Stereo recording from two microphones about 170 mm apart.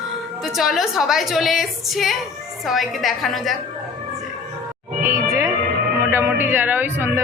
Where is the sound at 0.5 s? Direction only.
Centre (ahead or behind).